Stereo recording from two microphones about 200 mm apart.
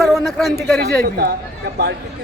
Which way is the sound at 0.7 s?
50° right (ahead or behind).